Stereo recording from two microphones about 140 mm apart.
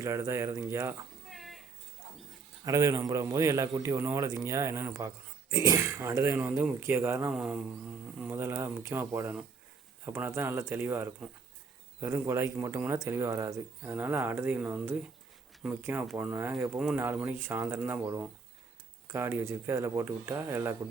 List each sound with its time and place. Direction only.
0.0 s a man's voice: 20° right (ahead or behind)
1.3 s a sound: centre (ahead or behind)
2.6 s a man's voice: 20° right (ahead or behind)